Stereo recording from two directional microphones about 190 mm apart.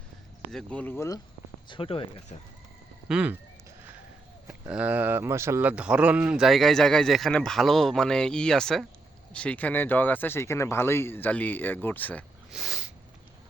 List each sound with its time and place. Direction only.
0.5 s speech: 5° left (ahead or behind)
1.6 s speech: 25° left (ahead or behind)
3.1 s speech: 5° right (ahead or behind)
4.7 s speech: 5° right (ahead or behind); by 12.2 s 10° left (ahead or behind)
12.5 s a sound: centre (ahead or behind)